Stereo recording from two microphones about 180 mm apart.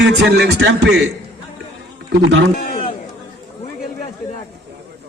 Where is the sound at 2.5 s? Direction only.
55° left (ahead or behind).